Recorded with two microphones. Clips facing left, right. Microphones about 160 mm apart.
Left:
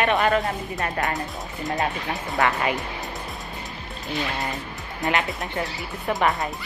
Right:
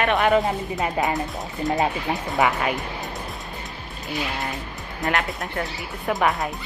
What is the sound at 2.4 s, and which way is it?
Speech, centre (ahead or behind).